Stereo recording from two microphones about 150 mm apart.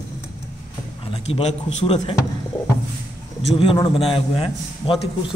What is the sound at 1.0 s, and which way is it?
Speech, 40° left (ahead or behind).